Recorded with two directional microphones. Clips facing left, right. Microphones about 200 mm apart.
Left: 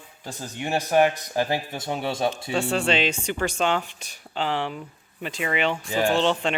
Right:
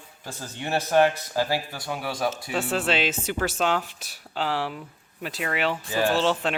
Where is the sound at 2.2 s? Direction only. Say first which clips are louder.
Left 1 dB; 5° right (ahead or behind).